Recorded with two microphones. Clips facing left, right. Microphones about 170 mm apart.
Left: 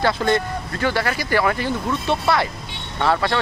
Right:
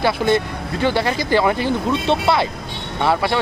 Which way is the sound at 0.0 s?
20° right (ahead or behind).